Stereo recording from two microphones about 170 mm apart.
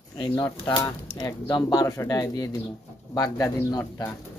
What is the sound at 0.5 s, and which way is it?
Speech, 20° left (ahead or behind).